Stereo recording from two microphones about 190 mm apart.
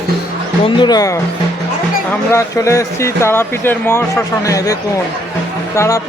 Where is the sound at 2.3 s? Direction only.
15° left (ahead or behind).